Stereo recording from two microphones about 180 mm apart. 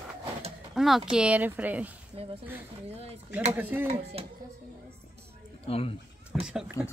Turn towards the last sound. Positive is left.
turn(degrees=-5)  # may be behind; listen again after turning